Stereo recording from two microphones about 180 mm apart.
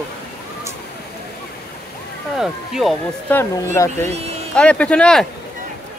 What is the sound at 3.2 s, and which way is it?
Speech, 15° left (ahead or behind).